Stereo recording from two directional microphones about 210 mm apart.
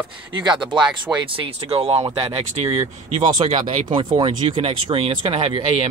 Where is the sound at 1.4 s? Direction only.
30° right (ahead or behind).